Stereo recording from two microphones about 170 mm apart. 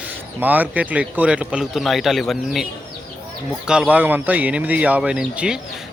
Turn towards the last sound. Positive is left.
turn(degrees=-5)  # may be behind; listen again after turning